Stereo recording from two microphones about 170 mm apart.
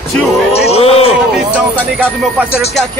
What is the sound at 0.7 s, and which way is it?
Speech, 35° left (ahead or behind).